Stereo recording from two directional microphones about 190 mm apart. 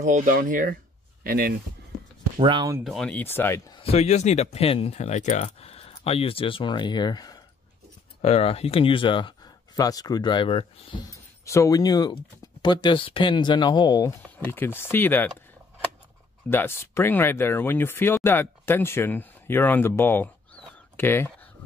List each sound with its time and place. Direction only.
0.0 s speech: 40° right (ahead or behind)
2.3 s speech: 25° right (ahead or behind)
2.8 s speech: centre (ahead or behind)
3.7 s speech: 30° left (ahead or behind)
8.2 s speech: 30° left (ahead or behind)
11.4 s speech: 15° left (ahead or behind)
14.2 s speech: 10° left (ahead or behind)
16.4 s speech: 10° left (ahead or behind)